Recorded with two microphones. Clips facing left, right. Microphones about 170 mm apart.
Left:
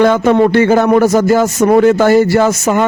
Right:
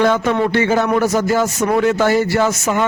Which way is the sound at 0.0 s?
50° left (ahead or behind).